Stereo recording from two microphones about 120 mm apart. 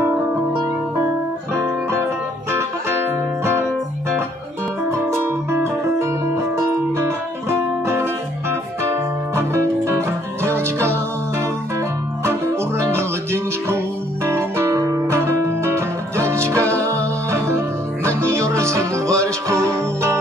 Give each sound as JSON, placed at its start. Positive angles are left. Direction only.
{"t": 1.5, "sound": "music", "side_deg": -20}
{"t": 5.1, "sound": "music", "side_deg": -20}